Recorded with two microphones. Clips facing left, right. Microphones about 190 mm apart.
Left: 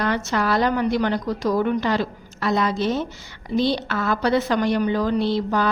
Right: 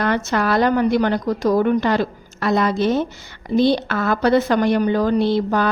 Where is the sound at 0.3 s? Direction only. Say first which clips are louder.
Right 3 dB; 55° right (ahead or behind).